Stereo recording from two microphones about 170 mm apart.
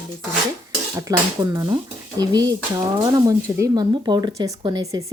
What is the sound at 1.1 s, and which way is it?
Speech, 20° right (ahead or behind).